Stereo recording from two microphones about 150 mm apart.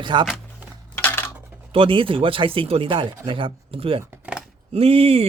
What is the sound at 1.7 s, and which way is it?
Speech, 35° right (ahead or behind).